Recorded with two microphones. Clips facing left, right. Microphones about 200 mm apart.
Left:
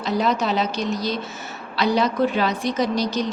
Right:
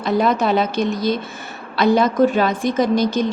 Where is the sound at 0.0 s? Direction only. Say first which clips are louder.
Right 4 dB; 55° right (ahead or behind).